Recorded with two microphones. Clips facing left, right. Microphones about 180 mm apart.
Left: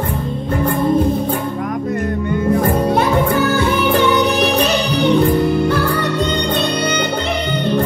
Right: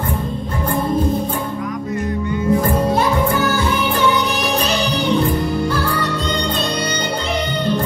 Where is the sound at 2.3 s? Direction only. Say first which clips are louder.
Left 1 dB; 55° left (ahead or behind).